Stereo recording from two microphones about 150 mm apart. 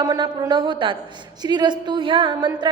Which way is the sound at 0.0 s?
25° right (ahead or behind).